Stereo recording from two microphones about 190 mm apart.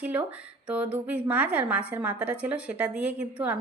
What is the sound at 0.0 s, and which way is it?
A woman's voice, 5° right (ahead or behind).